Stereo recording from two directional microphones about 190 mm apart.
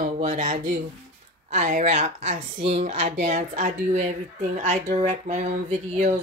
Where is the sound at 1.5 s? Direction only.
40° right (ahead or behind).